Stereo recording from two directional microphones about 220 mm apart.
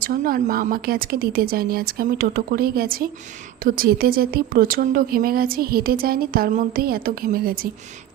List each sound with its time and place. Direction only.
0.0 s speech: 40° right (ahead or behind)